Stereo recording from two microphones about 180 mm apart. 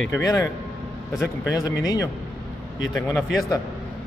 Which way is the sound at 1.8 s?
20° left (ahead or behind).